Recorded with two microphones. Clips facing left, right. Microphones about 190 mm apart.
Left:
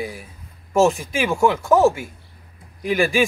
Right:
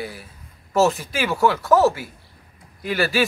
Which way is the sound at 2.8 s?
20° left (ahead or behind).